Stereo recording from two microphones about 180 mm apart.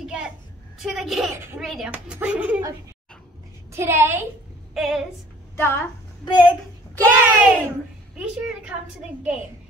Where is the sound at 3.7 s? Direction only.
15° right (ahead or behind).